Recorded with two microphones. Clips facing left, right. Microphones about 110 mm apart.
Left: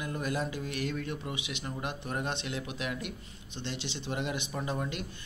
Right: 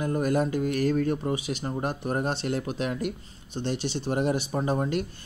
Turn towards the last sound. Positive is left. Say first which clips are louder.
# right 8 dB
turn(degrees=-40)  # may be behind; listen again after turning